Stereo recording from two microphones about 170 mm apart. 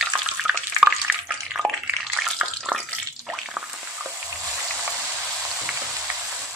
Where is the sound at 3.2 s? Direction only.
Centre (ahead or behind).